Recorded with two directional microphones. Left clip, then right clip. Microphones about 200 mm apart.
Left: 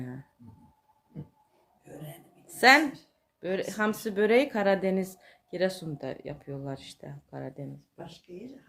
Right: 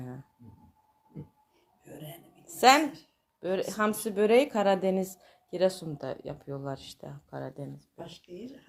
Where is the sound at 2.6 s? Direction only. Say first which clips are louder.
Left 1 dB; 5° left (ahead or behind).